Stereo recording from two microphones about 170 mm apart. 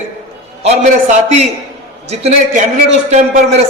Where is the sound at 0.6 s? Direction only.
40° right (ahead or behind).